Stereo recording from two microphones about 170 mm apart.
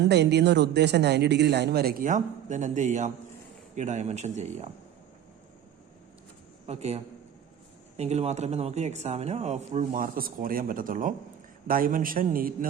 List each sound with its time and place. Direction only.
0.0 s a man's voice: 80° right; by 4.7 s 40° right (ahead or behind)
6.7 s a man's voice: 40° right (ahead or behind); by 12.6 s 55° right (ahead or behind)